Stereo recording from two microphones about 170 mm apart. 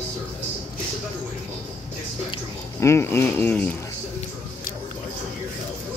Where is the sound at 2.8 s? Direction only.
15° left (ahead or behind).